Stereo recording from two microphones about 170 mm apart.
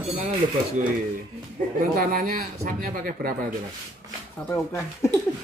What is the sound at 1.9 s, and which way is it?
Speech, 60° right (ahead or behind).